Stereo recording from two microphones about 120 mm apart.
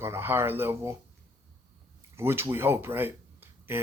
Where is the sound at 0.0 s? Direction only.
20° right (ahead or behind).